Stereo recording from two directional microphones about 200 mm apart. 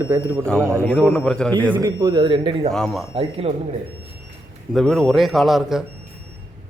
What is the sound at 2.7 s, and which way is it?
Speech, centre (ahead or behind).